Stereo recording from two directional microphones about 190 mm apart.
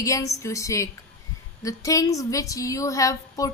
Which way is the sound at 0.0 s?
15° left (ahead or behind).